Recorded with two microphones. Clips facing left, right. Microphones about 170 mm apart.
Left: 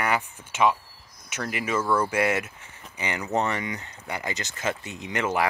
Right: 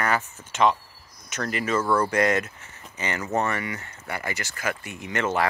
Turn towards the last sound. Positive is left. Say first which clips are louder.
# right 1 dB
turn(degrees=15)  # may be behind; listen again after turning